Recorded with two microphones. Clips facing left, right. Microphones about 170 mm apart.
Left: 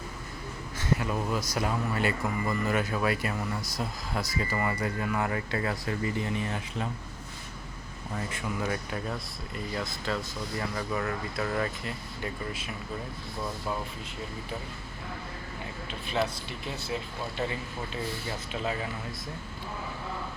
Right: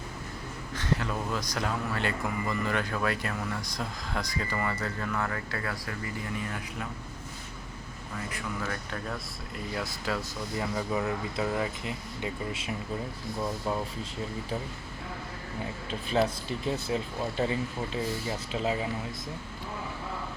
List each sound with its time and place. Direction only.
0.8 s speech: 10° left (ahead or behind)
8.3 s speech: 20° left (ahead or behind)
9.7 s speech: 10° right (ahead or behind)
15.9 s speech: 35° right (ahead or behind)